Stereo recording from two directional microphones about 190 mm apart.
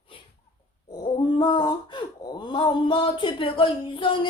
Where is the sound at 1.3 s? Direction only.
25° left (ahead or behind).